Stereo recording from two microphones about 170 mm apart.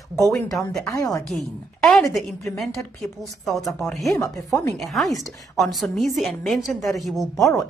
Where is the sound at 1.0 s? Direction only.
20° left (ahead or behind).